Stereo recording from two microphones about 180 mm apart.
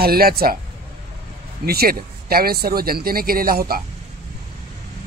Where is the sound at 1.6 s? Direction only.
60° right (ahead or behind).